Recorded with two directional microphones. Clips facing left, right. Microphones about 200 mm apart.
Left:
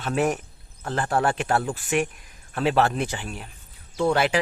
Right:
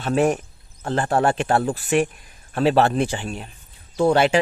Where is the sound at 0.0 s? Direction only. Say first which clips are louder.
Right 4 dB; 30° right (ahead or behind).